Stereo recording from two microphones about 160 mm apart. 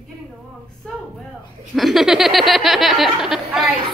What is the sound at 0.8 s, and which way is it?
A woman's voice, 5° left (ahead or behind).